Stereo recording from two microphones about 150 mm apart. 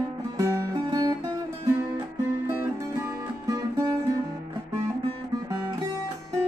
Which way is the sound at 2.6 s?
20° right (ahead or behind).